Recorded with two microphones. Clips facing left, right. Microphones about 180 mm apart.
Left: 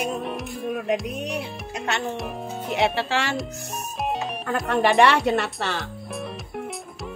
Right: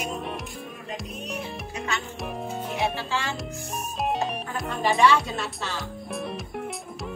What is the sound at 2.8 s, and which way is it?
Speech, 80° left.